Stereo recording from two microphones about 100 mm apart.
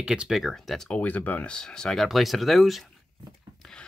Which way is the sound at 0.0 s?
5° right (ahead or behind).